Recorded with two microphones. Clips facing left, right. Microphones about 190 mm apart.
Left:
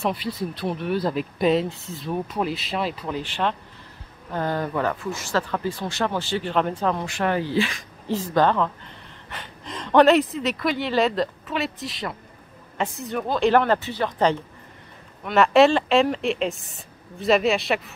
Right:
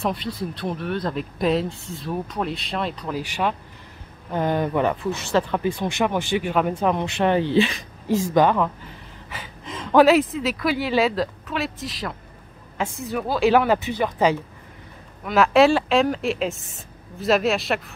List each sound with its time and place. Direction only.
0.0 s speech: centre (ahead or behind)
3.2 s speech: 10° right (ahead or behind)
8.1 s speech: 10° right (ahead or behind)